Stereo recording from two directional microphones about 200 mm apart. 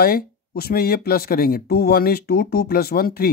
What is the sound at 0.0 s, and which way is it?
Speech, 50° left (ahead or behind).